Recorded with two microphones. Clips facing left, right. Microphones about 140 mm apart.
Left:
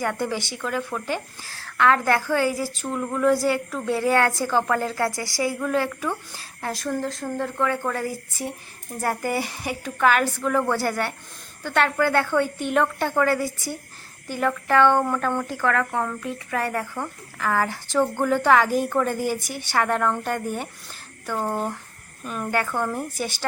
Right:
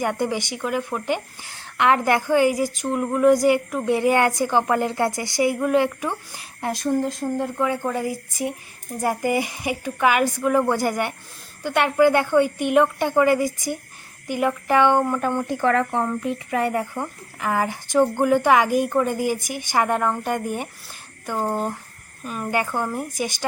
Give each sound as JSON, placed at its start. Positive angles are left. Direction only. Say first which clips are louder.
{"t": 0.0, "sound": "a woman's voice", "louder": "right 2 dB", "side_deg": -20}
{"t": 22.5, "sound": "a woman's voice", "louder": "right 1 dB", "side_deg": -15}